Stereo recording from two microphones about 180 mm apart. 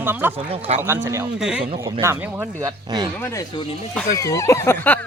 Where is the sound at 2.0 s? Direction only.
15° right (ahead or behind).